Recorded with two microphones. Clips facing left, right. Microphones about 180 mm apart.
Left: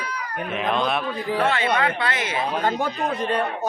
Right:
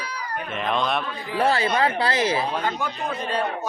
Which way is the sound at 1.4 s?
35° right (ahead or behind).